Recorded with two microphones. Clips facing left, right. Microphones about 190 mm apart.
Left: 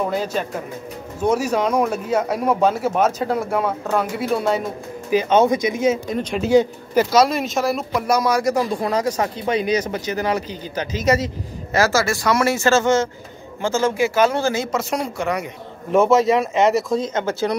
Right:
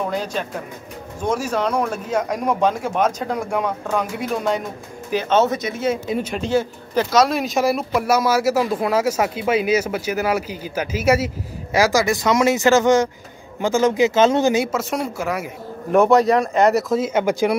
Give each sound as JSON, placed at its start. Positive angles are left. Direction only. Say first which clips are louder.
{"t": 0.0, "sound": "speech", "louder": "left 2 dB", "side_deg": 5}
{"t": 6.0, "sound": "speech", "louder": "even", "side_deg": -5}
{"t": 6.4, "sound": "speech", "louder": "left 5 dB", "side_deg": 15}
{"t": 14.7, "sound": "speech", "louder": "even", "side_deg": 0}